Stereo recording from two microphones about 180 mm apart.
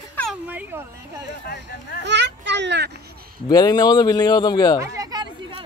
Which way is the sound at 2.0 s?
75° right (ahead or behind).